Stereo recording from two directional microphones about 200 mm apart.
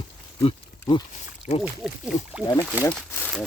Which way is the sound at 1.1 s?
35° left (ahead or behind).